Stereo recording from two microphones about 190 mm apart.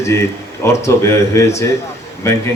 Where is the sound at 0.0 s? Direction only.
15° left (ahead or behind).